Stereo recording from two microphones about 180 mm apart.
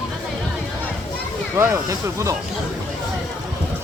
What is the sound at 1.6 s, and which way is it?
Speech, 15° right (ahead or behind).